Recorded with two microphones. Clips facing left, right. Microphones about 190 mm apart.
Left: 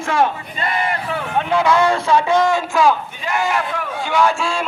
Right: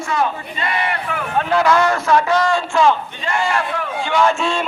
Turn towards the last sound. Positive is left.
turn(degrees=0)  # may be behind; listen again after turning